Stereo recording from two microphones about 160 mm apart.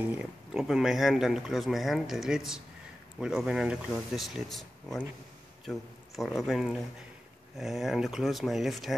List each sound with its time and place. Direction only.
0.0 s speech: 10° right (ahead or behind)